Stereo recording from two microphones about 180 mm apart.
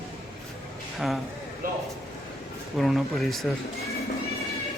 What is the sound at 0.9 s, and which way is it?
Speech, centre (ahead or behind).